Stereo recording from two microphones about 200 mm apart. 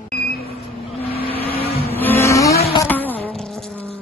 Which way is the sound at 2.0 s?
10° left (ahead or behind).